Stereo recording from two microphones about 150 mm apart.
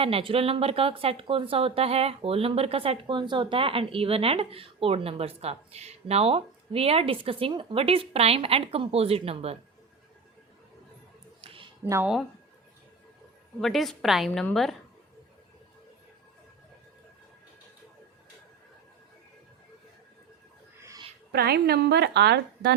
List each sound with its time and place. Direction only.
0.0 s speech: 40° right (ahead or behind)
11.3 s a sound: 40° right (ahead or behind)
11.8 s speech: 15° right (ahead or behind)
13.6 s a woman's voice: centre (ahead or behind)
20.7 s a sound: 20° right (ahead or behind)
21.3 s a woman's voice: 90° right